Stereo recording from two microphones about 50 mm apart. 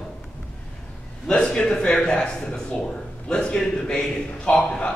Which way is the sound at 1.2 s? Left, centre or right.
Centre.